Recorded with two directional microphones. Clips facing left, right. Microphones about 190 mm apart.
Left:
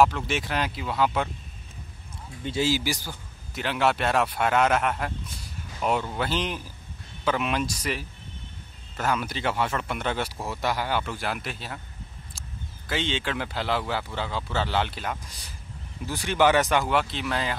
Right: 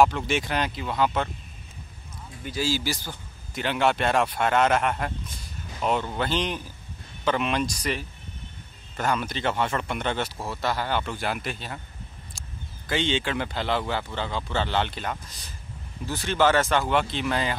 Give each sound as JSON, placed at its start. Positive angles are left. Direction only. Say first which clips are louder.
{"t": 0.0, "sound": "speech", "louder": "right 1 dB", "side_deg": 0}
{"t": 2.4, "sound": "speech", "louder": "left 2 dB", "side_deg": 20}
{"t": 3.5, "sound": "speech", "louder": "right 1 dB", "side_deg": 0}
{"t": 16.8, "sound": "speech", "louder": "right 1 dB", "side_deg": 0}